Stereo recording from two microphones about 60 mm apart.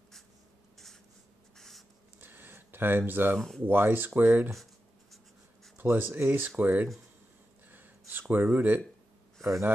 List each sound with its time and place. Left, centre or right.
1.6 s writing: centre
2.1 s a sound: right
3.3 s speech: centre
3.6 s speech: right
5.8 s speech: right
7.7 s a sound: right
8.5 s speech: right